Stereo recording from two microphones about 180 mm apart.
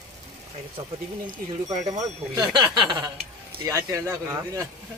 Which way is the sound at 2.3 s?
25° right (ahead or behind).